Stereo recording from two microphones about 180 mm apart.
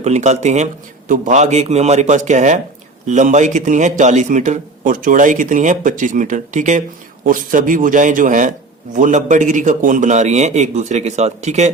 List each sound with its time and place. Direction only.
0.0 s a man's voice: 40° right (ahead or behind)